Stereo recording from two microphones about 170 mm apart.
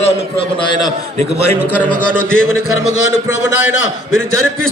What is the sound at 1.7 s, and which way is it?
Speech, 10° left (ahead or behind).